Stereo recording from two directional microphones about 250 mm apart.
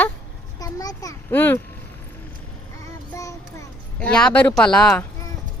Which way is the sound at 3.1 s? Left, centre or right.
Centre.